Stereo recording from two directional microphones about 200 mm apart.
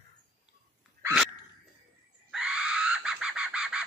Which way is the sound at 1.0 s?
5° right (ahead or behind).